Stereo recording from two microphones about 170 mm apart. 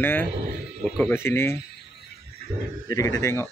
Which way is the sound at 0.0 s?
10° left (ahead or behind).